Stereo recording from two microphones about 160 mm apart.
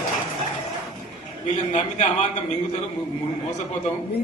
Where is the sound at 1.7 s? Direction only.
45° left (ahead or behind).